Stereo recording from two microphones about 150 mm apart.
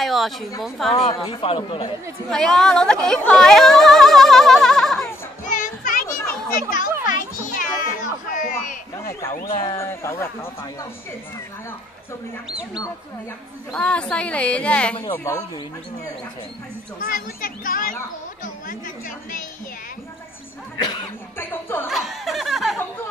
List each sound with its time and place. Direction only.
0.0 s a sound: centre (ahead or behind)
0.6 s speech: centre (ahead or behind)
1.0 s speech: 35° left (ahead or behind)
2.2 s speech: 5° left (ahead or behind)
5.5 s children playing: 60° left (ahead or behind)
7.1 s children playing: 65° left (ahead or behind)
9.5 s speech: 40° left (ahead or behind)
9.8 s speech: 20° left (ahead or behind)
13.7 s speech: 5° left (ahead or behind)
15.1 s speech: 20° left (ahead or behind)
17.0 s speech: 70° left (ahead or behind)
21.4 s speech: 15° left (ahead or behind)
21.8 s chuckle: centre (ahead or behind)